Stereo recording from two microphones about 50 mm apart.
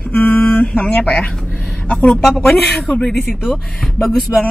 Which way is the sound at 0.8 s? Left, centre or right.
Left.